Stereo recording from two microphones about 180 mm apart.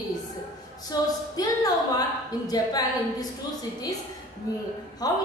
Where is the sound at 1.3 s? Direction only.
20° left (ahead or behind).